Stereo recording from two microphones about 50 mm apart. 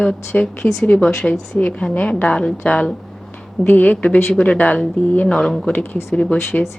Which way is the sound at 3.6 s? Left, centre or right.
Left.